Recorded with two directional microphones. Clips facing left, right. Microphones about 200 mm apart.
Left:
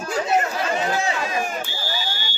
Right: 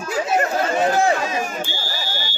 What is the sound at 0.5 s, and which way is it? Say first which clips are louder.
Speech: right 5 dB; 50° right (ahead or behind).